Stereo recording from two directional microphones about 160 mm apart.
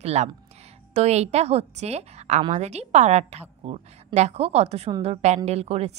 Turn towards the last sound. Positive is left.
turn(degrees=-40)  # may be behind; listen again after turning